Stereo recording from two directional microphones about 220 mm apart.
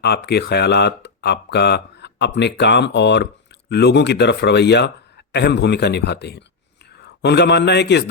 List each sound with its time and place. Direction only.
0.0 s speech: 50° left (ahead or behind)